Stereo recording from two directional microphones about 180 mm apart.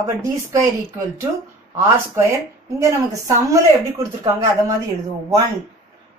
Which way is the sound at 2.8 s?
15° right (ahead or behind).